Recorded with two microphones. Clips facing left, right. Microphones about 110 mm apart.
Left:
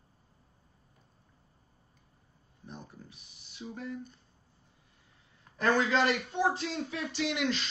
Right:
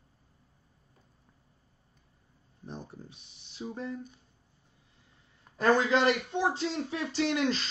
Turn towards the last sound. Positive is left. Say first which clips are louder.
# right 3 dB
turn(degrees=-35)  # may be behind; listen again after turning